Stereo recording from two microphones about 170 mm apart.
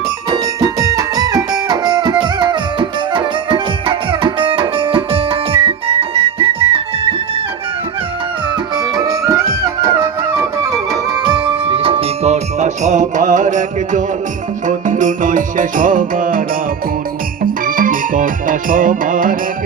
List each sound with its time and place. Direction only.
0.3 s music: 20° right (ahead or behind)
8.7 s music: 20° right (ahead or behind); by 16.4 s 50° right (ahead or behind)
17.4 s music: 55° right (ahead or behind)